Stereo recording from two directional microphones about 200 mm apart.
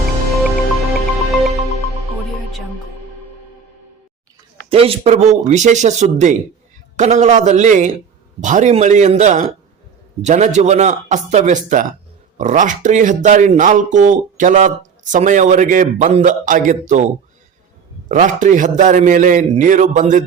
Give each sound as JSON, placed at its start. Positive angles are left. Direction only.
{"t": 0.9, "sound": "music", "side_deg": 0}
{"t": 4.7, "sound": "speech", "side_deg": -30}
{"t": 18.1, "sound": "speech", "side_deg": -40}